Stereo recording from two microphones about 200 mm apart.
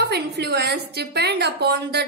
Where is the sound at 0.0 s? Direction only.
55° right (ahead or behind).